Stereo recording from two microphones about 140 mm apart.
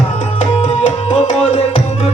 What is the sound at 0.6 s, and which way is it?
Tabla, 55° left (ahead or behind).